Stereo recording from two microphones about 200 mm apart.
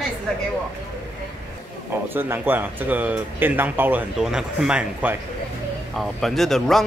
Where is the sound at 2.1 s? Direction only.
10° right (ahead or behind).